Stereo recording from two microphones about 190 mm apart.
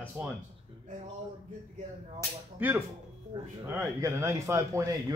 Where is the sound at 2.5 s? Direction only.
10° right (ahead or behind).